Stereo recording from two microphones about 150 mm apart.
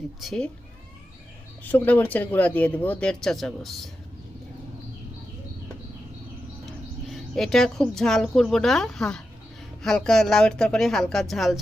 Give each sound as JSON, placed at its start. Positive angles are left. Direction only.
{"t": 0.2, "sound": "speech", "side_deg": 0}
{"t": 1.6, "sound": "speech", "side_deg": 10}
{"t": 7.1, "sound": "speech", "side_deg": 0}